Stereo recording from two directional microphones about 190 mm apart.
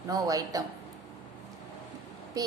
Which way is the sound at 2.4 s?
20° right (ahead or behind).